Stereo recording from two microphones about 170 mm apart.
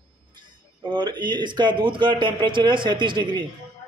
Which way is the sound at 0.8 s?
25° right (ahead or behind).